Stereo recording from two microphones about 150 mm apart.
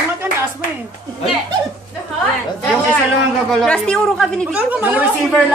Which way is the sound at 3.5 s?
5° left (ahead or behind).